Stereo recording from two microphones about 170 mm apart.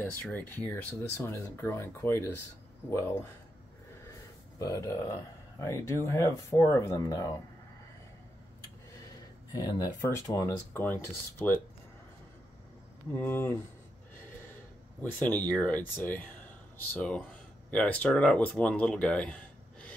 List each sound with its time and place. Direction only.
0.0 s speech: 10° left (ahead or behind)
4.6 s speech: 20° left (ahead or behind)
9.5 s speech: 20° left (ahead or behind)
13.1 s speech: 15° left (ahead or behind)
15.0 s speech: 10° left (ahead or behind)